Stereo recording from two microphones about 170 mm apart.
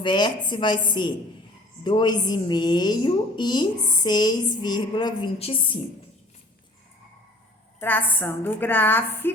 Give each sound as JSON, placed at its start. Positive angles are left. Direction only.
{"t": 0.0, "sound": "a woman's voice", "side_deg": 25}
{"t": 7.8, "sound": "a woman's voice", "side_deg": 10}